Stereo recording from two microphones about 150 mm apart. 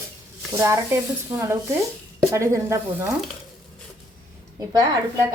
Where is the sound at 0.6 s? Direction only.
20° right (ahead or behind).